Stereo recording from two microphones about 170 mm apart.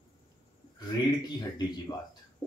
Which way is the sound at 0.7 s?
25° left (ahead or behind).